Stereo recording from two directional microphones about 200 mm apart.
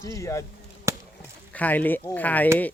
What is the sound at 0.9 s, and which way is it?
Chop, 15° right (ahead or behind).